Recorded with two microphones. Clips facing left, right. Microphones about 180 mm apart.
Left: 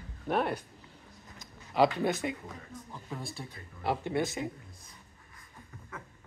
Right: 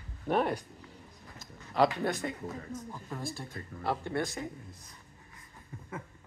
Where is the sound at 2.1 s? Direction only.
15° left (ahead or behind).